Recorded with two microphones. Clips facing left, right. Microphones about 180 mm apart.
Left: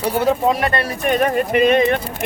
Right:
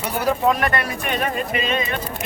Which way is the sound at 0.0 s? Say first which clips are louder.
Left 3 dB; 25° left (ahead or behind).